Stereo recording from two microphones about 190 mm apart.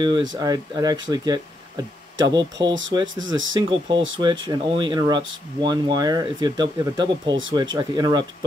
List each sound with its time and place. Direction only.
0.3 s speech: 20° right (ahead or behind)